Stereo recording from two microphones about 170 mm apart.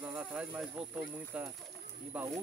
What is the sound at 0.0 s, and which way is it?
Speech, 10° right (ahead or behind).